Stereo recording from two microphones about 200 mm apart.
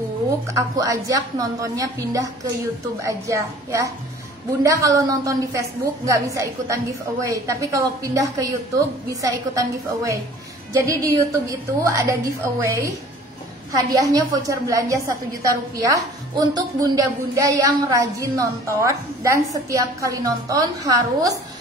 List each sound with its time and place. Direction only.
0.6 s a woman's voice: 15° right (ahead or behind)